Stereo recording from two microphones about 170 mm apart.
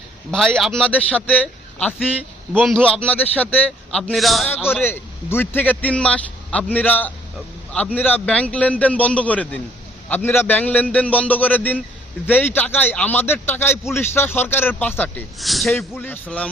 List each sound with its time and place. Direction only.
0.3 s a man's voice: 5° left (ahead or behind)
2.5 s speech: 10° right (ahead or behind)
2.7 s a man's voice: 5° left (ahead or behind)
4.8 s speech: 15° left (ahead or behind)
15.9 s speech: 10° left (ahead or behind)